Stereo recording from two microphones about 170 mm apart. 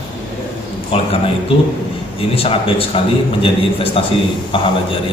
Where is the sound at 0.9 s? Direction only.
35° left (ahead or behind).